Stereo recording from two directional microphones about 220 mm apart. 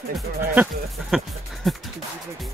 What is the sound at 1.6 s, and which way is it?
Speech, centre (ahead or behind).